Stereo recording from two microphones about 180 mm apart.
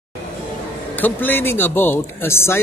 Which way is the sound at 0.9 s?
10° left (ahead or behind).